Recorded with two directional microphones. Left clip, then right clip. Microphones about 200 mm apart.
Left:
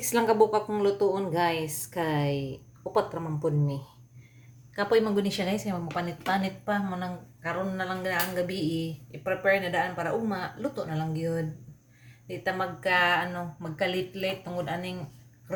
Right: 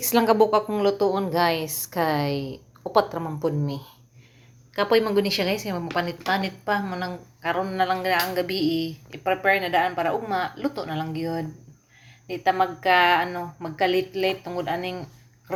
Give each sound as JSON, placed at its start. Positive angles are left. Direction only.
{"t": 0.0, "sound": "a woman's voice", "side_deg": -10}